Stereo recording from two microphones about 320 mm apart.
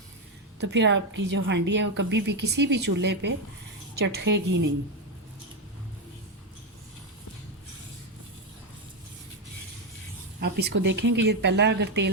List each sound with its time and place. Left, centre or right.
0.6 s speech: right
10.4 s speech: right